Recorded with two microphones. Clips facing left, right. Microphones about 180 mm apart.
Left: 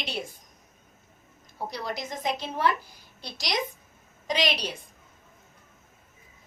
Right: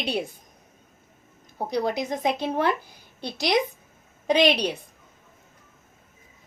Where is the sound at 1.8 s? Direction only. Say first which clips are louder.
Right 11 dB; 65° right (ahead or behind).